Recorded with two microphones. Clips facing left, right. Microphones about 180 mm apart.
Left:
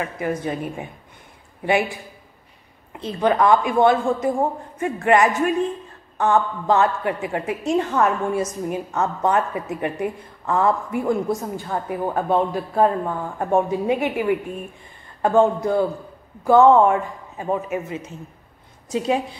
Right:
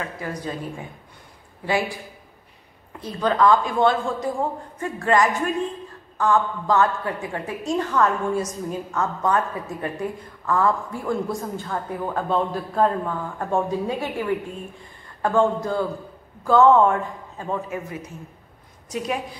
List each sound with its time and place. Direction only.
0.0 s a woman's voice: 20° left (ahead or behind)
2.9 s a woman's voice: 25° left (ahead or behind)